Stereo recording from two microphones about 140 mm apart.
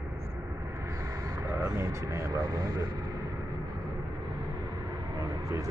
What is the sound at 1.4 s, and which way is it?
Speech, 20° right (ahead or behind).